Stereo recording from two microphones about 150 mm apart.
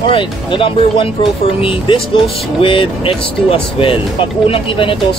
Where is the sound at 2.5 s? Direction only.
35° left (ahead or behind).